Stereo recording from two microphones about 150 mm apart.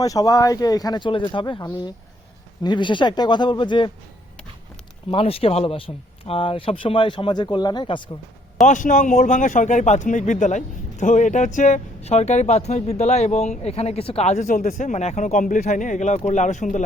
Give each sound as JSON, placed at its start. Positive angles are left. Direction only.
{"t": 0.0, "sound": "speech", "side_deg": 25}
{"t": 5.1, "sound": "speech", "side_deg": 40}
{"t": 8.6, "sound": "speech", "side_deg": 60}